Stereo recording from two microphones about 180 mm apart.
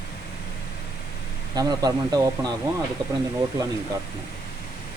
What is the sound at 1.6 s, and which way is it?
Speech, 20° right (ahead or behind).